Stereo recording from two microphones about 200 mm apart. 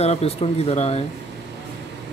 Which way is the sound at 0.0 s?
30° left (ahead or behind).